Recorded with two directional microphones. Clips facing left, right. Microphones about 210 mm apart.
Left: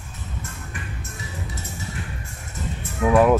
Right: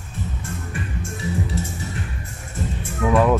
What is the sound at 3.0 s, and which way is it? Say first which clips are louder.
Speech: left 1 dB; 10° left (ahead or behind).